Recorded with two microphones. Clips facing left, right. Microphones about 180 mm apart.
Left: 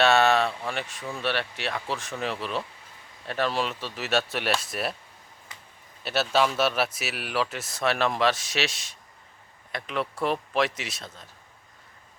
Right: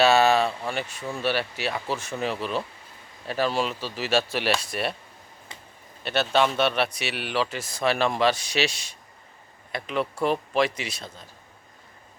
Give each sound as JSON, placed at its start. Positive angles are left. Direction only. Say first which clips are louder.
{"t": 0.0, "sound": "speech", "louder": "right 2 dB", "side_deg": 0}
{"t": 5.5, "sound": "a sound", "louder": "right 3 dB", "side_deg": -25}
{"t": 6.0, "sound": "speech", "louder": "right 1 dB", "side_deg": 5}